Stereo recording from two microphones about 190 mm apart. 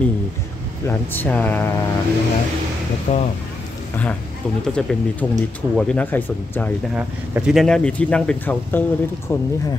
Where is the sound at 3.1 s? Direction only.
30° left (ahead or behind).